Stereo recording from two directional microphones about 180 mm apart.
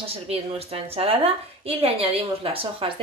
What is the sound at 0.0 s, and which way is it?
A woman's voice, 30° right (ahead or behind).